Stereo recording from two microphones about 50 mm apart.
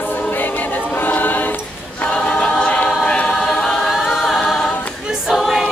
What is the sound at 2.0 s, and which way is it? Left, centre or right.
Choir, left.